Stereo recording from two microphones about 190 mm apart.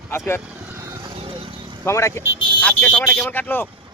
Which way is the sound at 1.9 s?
15° left (ahead or behind).